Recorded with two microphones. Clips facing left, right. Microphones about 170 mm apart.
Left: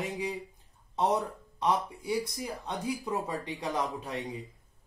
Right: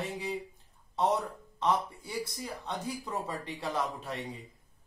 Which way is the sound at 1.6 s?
10° left (ahead or behind).